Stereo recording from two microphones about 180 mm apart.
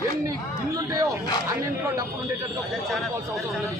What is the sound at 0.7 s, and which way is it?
Speech, 20° right (ahead or behind).